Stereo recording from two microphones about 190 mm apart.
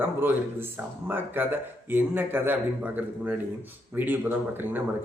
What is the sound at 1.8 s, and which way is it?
Speech, 10° right (ahead or behind).